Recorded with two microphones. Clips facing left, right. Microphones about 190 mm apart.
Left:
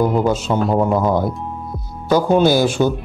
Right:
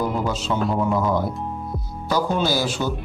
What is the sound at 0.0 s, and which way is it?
Speech, 50° left (ahead or behind).